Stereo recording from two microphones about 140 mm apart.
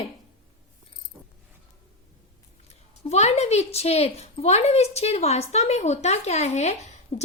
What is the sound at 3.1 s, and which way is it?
A woman's voice, 50° left (ahead or behind).